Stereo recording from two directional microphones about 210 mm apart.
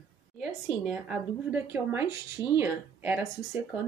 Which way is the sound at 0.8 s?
5° right (ahead or behind).